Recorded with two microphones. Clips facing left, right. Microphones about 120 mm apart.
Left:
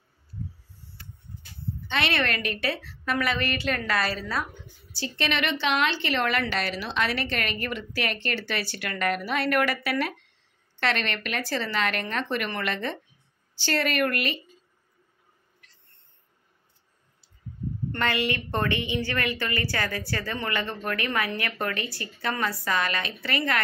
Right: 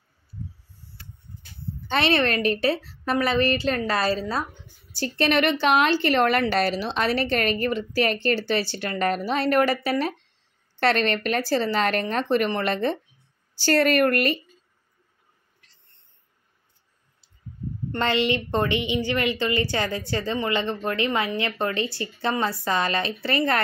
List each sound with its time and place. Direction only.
1.9 s a woman's voice: 35° right (ahead or behind)
4.9 s a woman's voice: 45° right (ahead or behind)
17.9 s a woman's voice: 25° right (ahead or behind)